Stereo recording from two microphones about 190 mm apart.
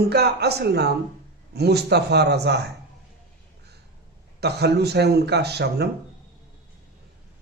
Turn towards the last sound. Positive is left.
turn(degrees=-60)  # may be behind; listen again after turning